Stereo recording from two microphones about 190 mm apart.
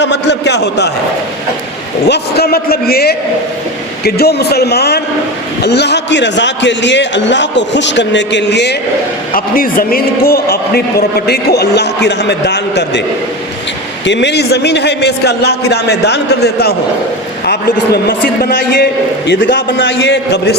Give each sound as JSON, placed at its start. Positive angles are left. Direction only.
{"t": 0.0, "sound": "a man's voice", "side_deg": 65}
{"t": 2.0, "sound": "a man's voice", "side_deg": 60}
{"t": 9.3, "sound": "a man's voice", "side_deg": 50}
{"t": 14.0, "sound": "a man's voice", "side_deg": 70}